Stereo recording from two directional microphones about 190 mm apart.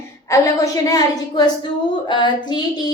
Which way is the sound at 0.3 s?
20° left (ahead or behind).